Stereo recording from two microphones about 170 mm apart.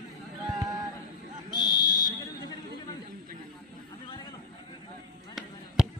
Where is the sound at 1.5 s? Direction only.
25° right (ahead or behind).